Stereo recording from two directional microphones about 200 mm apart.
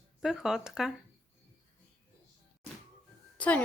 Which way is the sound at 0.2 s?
Centre (ahead or behind).